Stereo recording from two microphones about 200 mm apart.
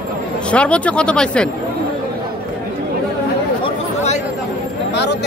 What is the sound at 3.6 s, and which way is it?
Chatter, 35° left (ahead or behind).